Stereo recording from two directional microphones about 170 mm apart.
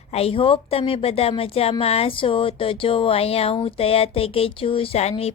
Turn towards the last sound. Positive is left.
turn(degrees=40)  # may be behind; listen again after turning